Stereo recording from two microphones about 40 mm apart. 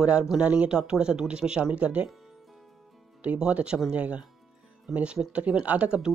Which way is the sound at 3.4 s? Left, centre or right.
Right.